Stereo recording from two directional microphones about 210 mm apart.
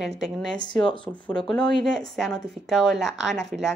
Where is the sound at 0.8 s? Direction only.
25° left (ahead or behind).